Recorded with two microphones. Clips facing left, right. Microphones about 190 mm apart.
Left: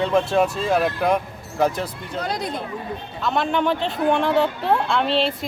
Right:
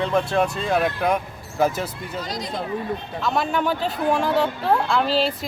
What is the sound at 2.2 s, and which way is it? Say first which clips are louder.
Speech: left 4 dB; 60° left (ahead or behind).